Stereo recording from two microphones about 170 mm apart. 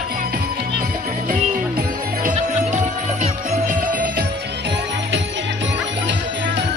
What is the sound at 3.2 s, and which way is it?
Jingle bell, 55° right (ahead or behind).